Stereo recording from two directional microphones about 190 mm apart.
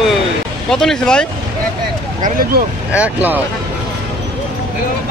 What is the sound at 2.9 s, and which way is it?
Speech, 10° right (ahead or behind).